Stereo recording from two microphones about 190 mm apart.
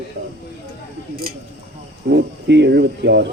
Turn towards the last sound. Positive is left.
turn(degrees=-65)  # may be behind; listen again after turning